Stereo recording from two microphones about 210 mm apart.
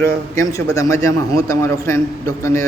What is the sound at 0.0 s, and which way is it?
Speech, 15° left (ahead or behind).